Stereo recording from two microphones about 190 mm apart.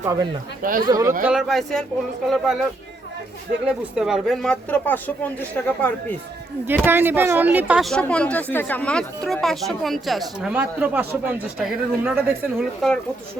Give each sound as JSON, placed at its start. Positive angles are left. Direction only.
{"t": 0.0, "sound": "speech", "side_deg": -15}
{"t": 0.6, "sound": "speech", "side_deg": -45}
{"t": 0.9, "sound": "speech", "side_deg": -20}
{"t": 1.2, "sound": "speech", "side_deg": -5}
{"t": 3.7, "sound": "speech", "side_deg": -5}
{"t": 6.7, "sound": "speech", "side_deg": -10}